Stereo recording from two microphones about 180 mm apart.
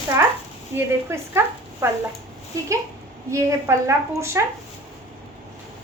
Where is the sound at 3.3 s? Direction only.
15° right (ahead or behind).